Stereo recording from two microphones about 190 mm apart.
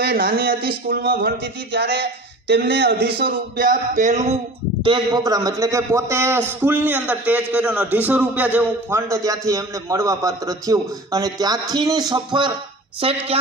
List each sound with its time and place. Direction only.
0.0 s speech: 55° right (ahead or behind); by 4.4 s 35° right (ahead or behind)
4.8 s a man's voice: 25° right (ahead or behind)